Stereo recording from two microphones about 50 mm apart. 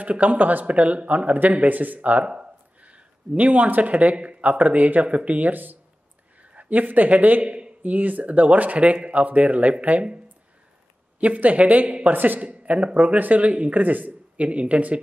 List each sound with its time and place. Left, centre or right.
0.0 s speech: right
7.4 s a man's voice: right
7.8 s speech: right
11.1 s speech: right